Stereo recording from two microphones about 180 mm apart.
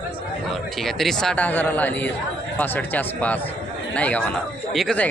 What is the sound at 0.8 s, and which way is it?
Speech, centre (ahead or behind).